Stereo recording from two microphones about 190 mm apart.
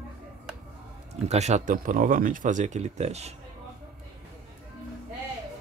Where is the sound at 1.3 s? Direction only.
35° right (ahead or behind).